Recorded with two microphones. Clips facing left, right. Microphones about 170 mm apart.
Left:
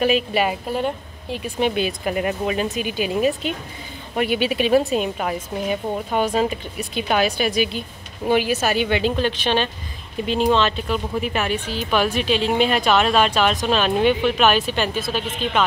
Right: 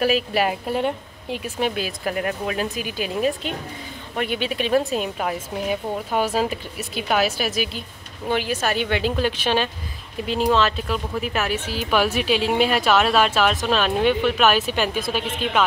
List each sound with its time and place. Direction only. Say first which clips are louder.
0.0 s speech: left 1 dB; 5° right (ahead or behind)
0.7 s a woman's voice: even; 20° right (ahead or behind)
1.4 s speech: left 4 dB; centre (ahead or behind)
8.3 s speech: left 4 dB; 10° left (ahead or behind); by 15.6 s 10° right (ahead or behind)